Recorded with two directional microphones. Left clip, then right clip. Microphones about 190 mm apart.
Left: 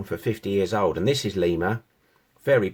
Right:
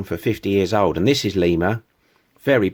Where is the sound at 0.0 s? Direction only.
40° right (ahead or behind).